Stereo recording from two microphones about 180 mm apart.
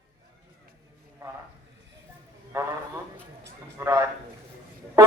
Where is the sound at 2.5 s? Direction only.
15° right (ahead or behind).